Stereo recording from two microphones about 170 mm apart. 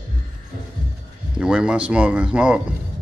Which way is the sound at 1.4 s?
5° right (ahead or behind).